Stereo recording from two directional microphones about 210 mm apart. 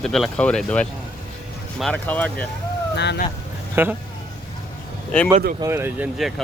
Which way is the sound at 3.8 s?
10° right (ahead or behind).